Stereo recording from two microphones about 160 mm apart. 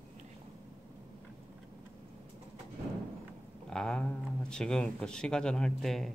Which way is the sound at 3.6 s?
5° left (ahead or behind).